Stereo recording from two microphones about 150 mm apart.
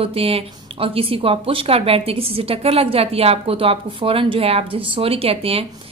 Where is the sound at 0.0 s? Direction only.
40° right (ahead or behind).